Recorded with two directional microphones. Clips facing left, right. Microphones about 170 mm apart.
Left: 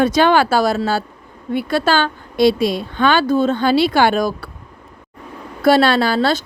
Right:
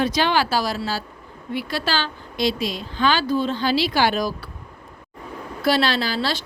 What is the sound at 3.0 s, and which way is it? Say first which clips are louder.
A woman's voice: left 5 dB; 55° left (ahead or behind).